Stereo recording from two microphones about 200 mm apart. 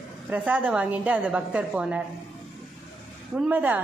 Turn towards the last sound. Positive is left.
turn(degrees=-10)  # may be behind; listen again after turning